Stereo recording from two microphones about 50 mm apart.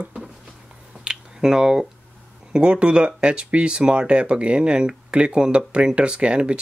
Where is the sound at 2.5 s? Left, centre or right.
Right.